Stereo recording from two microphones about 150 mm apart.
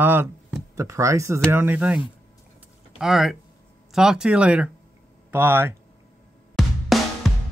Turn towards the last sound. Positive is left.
turn(degrees=0)  # may be behind; listen again after turning